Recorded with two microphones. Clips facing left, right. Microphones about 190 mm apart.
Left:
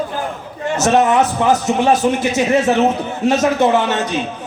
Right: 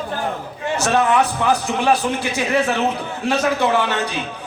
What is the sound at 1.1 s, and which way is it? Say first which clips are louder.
A man's voice: left 3 dB; 20° left (ahead or behind).